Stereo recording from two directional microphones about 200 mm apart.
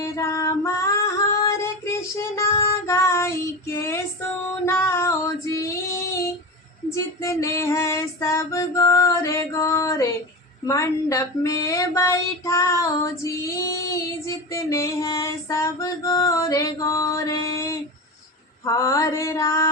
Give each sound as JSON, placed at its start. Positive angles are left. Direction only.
{"t": 0.0, "sound": "female singing", "side_deg": 15}